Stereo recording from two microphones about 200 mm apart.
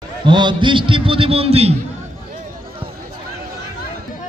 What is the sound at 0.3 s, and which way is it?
A man's voice, 25° right (ahead or behind).